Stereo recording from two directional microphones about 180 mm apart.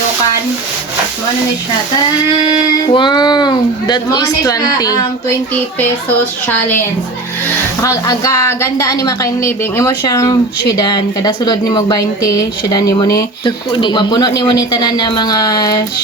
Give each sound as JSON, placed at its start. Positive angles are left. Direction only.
{"t": 2.9, "sound": "speech", "side_deg": 25}
{"t": 7.8, "sound": "speech", "side_deg": 20}